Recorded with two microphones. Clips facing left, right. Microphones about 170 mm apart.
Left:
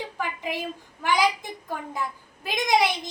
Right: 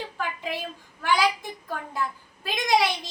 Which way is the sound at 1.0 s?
20° left (ahead or behind).